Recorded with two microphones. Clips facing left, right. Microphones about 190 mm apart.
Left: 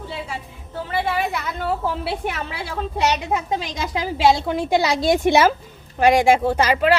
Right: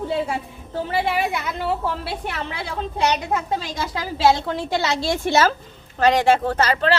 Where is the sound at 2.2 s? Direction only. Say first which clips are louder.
Left 1 dB; 10° left (ahead or behind).